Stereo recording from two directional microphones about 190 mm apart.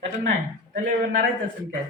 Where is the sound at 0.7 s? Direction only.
45° right (ahead or behind).